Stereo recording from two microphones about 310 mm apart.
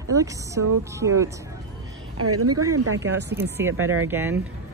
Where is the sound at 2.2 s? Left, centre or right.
Right.